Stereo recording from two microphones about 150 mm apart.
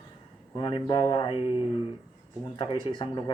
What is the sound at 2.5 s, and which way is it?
Speech, 35° left (ahead or behind).